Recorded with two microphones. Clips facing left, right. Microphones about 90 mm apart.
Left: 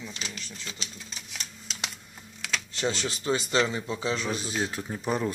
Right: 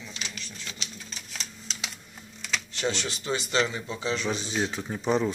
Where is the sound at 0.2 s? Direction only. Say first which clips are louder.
Even; 35° left (ahead or behind).